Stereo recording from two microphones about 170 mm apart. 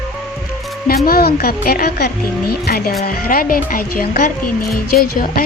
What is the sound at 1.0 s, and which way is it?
Speech, 65° left (ahead or behind).